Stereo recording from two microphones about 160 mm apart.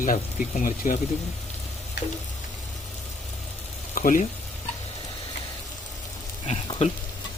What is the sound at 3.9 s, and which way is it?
Speech, 55° left (ahead or behind).